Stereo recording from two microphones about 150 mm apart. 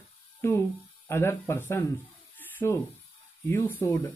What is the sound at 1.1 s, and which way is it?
Speech, 15° left (ahead or behind).